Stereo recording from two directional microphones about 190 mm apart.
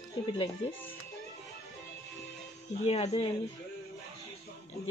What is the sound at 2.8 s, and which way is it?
Speech, 35° left (ahead or behind).